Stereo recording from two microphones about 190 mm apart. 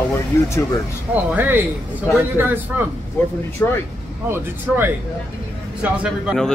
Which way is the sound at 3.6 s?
10° left (ahead or behind).